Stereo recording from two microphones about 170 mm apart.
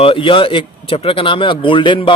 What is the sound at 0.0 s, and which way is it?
A man's voice, 30° left (ahead or behind).